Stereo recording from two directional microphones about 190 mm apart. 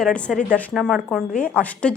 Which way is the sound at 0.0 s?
5° left (ahead or behind).